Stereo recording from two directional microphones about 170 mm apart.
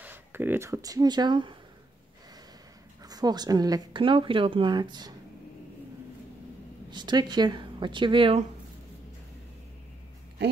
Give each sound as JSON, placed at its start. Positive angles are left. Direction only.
{"t": 0.0, "sound": "speech", "side_deg": -10}
{"t": 3.0, "sound": "a woman's voice", "side_deg": -25}
{"t": 6.9, "sound": "a woman's voice", "side_deg": -25}